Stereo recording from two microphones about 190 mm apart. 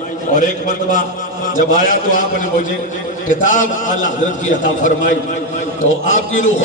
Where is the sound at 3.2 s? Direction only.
45° left (ahead or behind).